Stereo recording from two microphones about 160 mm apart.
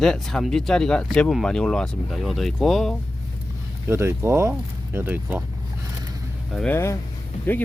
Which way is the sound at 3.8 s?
15° right (ahead or behind).